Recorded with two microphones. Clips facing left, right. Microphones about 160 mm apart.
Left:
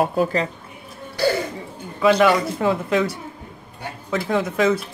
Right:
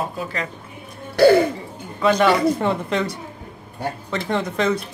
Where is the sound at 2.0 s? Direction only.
5° left (ahead or behind).